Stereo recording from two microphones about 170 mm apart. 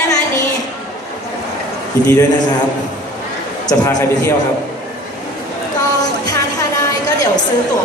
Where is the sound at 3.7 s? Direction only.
15° left (ahead or behind).